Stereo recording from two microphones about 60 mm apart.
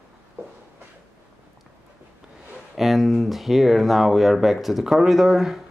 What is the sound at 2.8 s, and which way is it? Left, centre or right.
Speech, centre.